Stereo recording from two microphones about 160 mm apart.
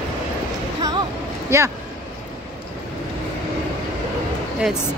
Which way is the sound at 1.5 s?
20° right (ahead or behind).